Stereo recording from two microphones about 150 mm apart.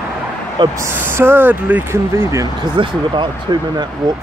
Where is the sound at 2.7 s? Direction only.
30° right (ahead or behind).